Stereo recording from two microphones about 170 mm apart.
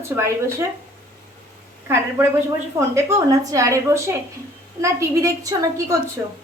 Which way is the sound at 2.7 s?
15° right (ahead or behind).